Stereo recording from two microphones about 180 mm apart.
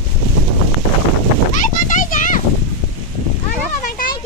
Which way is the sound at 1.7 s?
45° left (ahead or behind).